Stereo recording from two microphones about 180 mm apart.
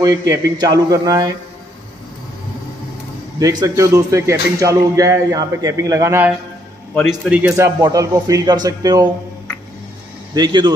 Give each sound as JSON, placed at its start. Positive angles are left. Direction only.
{"t": 0.0, "sound": "speech", "side_deg": -20}
{"t": 3.3, "sound": "a man's voice", "side_deg": -20}
{"t": 7.5, "sound": "a man's voice", "side_deg": -15}
{"t": 10.3, "sound": "speech", "side_deg": -25}